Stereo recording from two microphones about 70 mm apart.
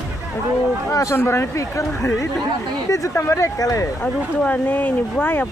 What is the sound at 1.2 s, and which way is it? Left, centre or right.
A man's voice, left.